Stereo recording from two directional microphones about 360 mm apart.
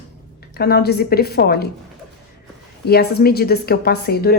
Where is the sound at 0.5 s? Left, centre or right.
Left.